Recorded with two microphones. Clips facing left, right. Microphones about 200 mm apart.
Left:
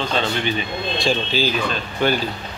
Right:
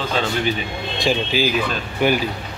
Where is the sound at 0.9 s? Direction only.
15° right (ahead or behind).